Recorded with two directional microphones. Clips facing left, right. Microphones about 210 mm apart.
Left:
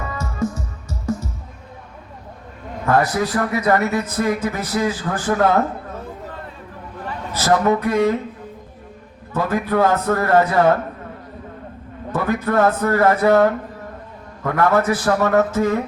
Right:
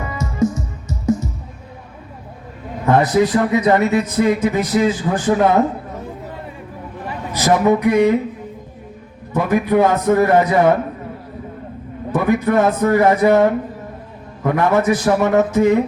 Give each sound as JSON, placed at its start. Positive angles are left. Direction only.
{"t": 0.0, "sound": "music", "side_deg": -15}
{"t": 2.8, "sound": "a man's voice", "side_deg": -20}
{"t": 7.0, "sound": "a man's voice", "side_deg": -15}
{"t": 9.3, "sound": "a man's voice", "side_deg": -15}
{"t": 12.1, "sound": "a man's voice", "side_deg": -15}